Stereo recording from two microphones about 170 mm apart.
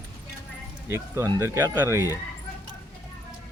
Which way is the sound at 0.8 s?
15° right (ahead or behind).